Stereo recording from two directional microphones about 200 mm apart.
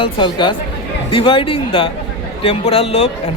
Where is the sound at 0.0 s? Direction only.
25° left (ahead or behind).